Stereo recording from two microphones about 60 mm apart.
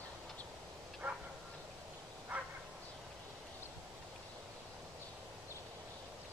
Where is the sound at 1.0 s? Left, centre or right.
Right.